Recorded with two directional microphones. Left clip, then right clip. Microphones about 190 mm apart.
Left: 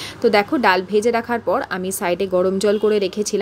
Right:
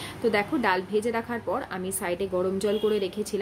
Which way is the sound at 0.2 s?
35° left (ahead or behind).